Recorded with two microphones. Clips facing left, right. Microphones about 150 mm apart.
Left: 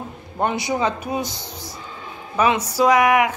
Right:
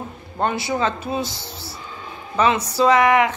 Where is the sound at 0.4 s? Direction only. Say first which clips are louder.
Even; 15° left (ahead or behind).